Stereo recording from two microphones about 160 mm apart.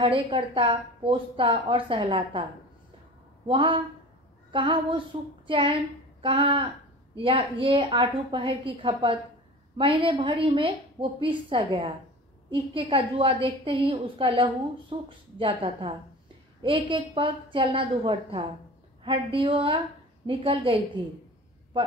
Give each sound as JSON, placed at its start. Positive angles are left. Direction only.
{"t": 0.0, "sound": "a woman's voice", "side_deg": -35}
{"t": 3.4, "sound": "a woman's voice", "side_deg": -30}